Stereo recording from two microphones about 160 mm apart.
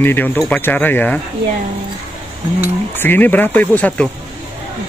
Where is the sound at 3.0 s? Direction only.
10° left (ahead or behind).